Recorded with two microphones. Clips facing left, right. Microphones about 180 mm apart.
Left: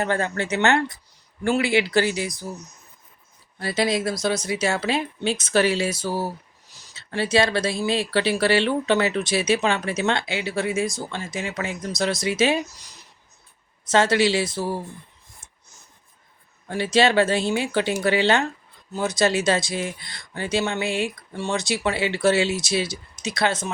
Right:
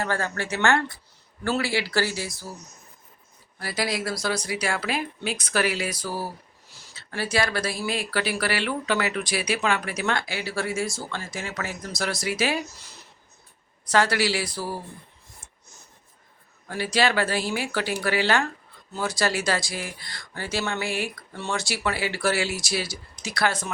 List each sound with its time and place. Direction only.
0.0 s speech: 20° left (ahead or behind)
3.6 s speech: 25° left (ahead or behind)
13.9 s speech: 25° left (ahead or behind)
16.6 s speech: 25° left (ahead or behind)